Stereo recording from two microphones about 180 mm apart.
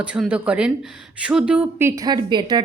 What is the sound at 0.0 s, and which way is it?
A woman's voice, 5° right (ahead or behind).